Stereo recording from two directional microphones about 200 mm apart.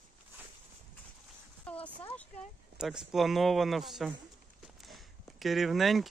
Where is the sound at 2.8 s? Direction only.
Centre (ahead or behind).